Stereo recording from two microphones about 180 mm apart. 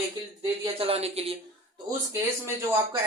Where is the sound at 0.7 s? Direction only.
35° right (ahead or behind).